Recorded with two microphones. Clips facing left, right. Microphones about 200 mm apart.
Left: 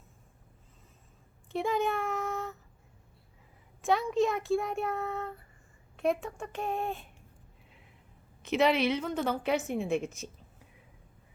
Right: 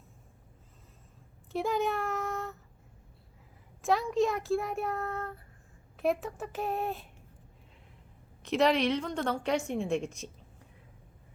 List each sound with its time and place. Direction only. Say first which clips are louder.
1.5 s a child's voice: even; centre (ahead or behind)
3.8 s a woman's voice: even; centre (ahead or behind)
8.4 s a woman's voice: even; centre (ahead or behind)